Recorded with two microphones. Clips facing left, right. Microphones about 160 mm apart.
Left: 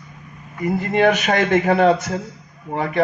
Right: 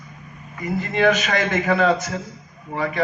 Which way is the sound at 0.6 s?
55° left (ahead or behind).